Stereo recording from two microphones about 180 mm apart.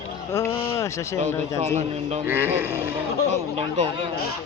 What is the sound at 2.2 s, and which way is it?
Speech, 10° right (ahead or behind).